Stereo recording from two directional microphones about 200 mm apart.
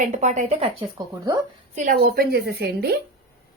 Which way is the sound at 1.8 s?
45° right (ahead or behind).